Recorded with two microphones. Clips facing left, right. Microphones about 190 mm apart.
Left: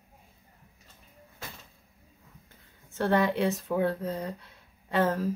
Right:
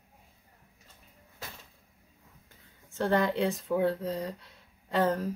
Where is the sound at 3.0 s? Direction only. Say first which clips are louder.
Left 2 dB; 65° left (ahead or behind).